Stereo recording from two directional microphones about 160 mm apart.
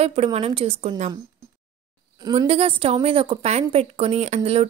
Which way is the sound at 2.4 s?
40° right (ahead or behind).